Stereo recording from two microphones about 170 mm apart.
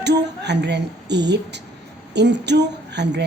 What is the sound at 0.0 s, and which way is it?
A woman's voice, 90° right.